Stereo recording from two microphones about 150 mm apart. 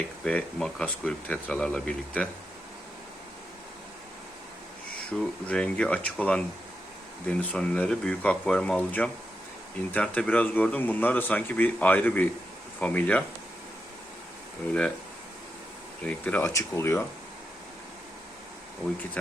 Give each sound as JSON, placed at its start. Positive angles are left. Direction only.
{"t": 0.3, "sound": "speech", "side_deg": 5}
{"t": 5.1, "sound": "speech", "side_deg": 5}
{"t": 14.7, "sound": "speech", "side_deg": 5}
{"t": 16.0, "sound": "speech", "side_deg": 10}
{"t": 16.4, "sound": "speech", "side_deg": 20}